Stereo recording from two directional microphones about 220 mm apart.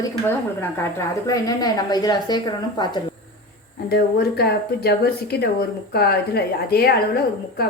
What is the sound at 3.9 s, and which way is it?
A woman's voice, 45° left (ahead or behind).